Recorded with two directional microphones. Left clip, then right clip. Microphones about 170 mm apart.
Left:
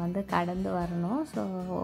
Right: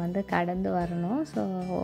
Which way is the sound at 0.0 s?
15° right (ahead or behind).